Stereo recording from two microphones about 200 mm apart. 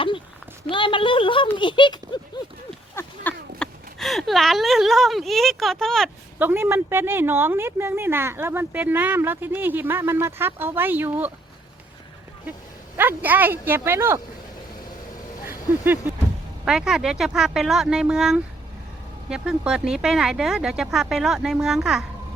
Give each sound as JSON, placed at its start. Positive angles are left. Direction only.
{"t": 0.7, "sound": "speech", "side_deg": 25}
{"t": 2.6, "sound": "a sound", "side_deg": 10}
{"t": 6.4, "sound": "speech", "side_deg": -10}
{"t": 13.0, "sound": "speech", "side_deg": -10}
{"t": 15.4, "sound": "a sound", "side_deg": -10}
{"t": 16.6, "sound": "speech", "side_deg": -5}